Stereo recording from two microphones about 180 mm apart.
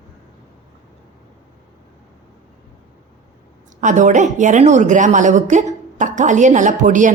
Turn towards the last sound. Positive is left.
turn(degrees=-45)  # may be behind; listen again after turning